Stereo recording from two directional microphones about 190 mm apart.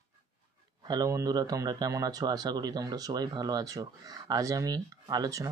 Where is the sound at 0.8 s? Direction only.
20° right (ahead or behind).